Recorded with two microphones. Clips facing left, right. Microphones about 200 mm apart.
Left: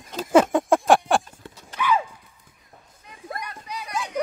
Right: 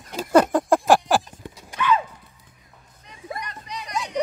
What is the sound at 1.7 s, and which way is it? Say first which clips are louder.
Horse: right 1 dB; 10° left (ahead or behind).